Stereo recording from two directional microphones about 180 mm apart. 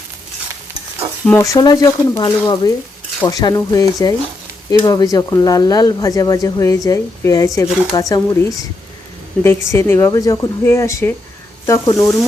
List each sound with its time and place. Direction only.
1.4 s speech: 20° left (ahead or behind)